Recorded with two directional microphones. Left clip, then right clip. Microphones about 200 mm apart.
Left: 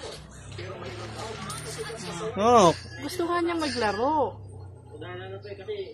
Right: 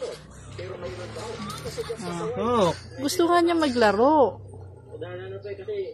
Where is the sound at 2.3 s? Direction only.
40° left (ahead or behind).